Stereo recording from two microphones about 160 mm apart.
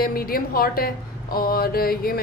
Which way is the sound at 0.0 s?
65° left (ahead or behind).